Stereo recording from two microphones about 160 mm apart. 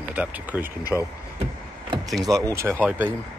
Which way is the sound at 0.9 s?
10° left (ahead or behind).